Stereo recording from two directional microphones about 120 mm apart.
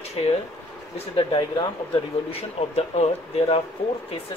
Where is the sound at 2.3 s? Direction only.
60° left (ahead or behind).